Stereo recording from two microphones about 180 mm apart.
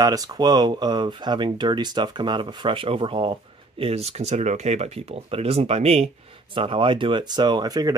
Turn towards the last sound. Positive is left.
turn(degrees=-20)  # may be behind; listen again after turning